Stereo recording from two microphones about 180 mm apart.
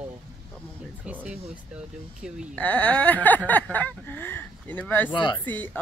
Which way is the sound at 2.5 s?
10° left (ahead or behind).